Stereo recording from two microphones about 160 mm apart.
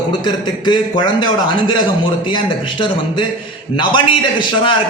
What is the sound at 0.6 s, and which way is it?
A man's voice, 30° left (ahead or behind).